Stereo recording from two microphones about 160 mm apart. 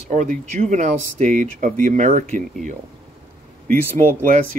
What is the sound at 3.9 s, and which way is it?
Speech, 55° right (ahead or behind).